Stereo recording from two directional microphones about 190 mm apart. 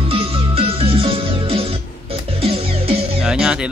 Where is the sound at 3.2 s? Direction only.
5° right (ahead or behind).